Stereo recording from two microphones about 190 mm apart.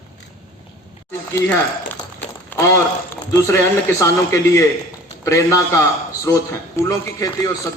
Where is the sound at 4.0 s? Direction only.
15° left (ahead or behind).